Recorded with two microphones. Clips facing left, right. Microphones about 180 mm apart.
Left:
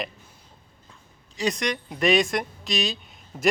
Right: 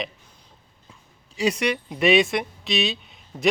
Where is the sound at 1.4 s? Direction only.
10° right (ahead or behind).